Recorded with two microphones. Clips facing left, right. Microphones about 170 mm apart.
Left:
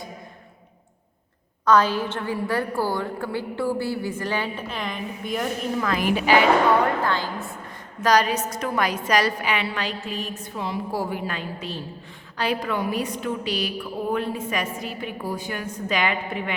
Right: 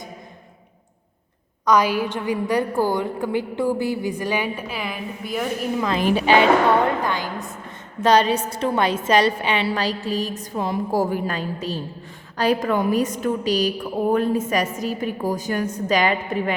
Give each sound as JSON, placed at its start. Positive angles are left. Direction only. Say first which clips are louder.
{"t": 1.6, "sound": "a woman's voice", "louder": "right 1 dB", "side_deg": -10}
{"t": 5.8, "sound": "a woman's voice", "louder": "right 3 dB", "side_deg": -25}
{"t": 7.0, "sound": "a woman's voice", "louder": "even", "side_deg": -15}
{"t": 8.0, "sound": "a woman's voice", "louder": "right 3 dB", "side_deg": -25}